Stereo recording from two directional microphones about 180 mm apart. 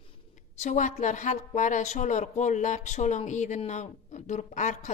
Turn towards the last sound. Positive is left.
turn(degrees=40)  # may be behind; listen again after turning